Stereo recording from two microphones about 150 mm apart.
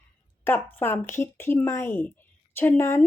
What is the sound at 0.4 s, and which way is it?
Speech, 15° left (ahead or behind).